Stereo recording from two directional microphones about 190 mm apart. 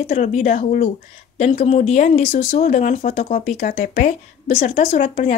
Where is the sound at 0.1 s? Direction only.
40° left (ahead or behind).